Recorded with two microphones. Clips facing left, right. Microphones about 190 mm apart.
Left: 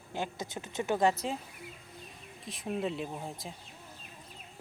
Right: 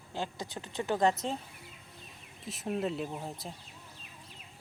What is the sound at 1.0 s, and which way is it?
Speech, 5° left (ahead or behind).